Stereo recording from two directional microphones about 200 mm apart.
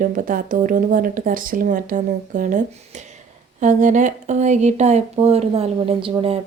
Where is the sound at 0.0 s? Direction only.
45° right (ahead or behind).